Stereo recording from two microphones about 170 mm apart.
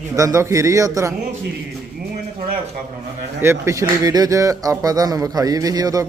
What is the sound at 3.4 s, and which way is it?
A man's voice, 15° right (ahead or behind).